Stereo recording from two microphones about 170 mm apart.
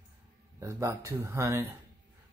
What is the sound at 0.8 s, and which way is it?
Speech, 15° right (ahead or behind).